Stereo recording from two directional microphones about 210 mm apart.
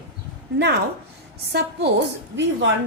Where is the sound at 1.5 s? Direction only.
55° right (ahead or behind).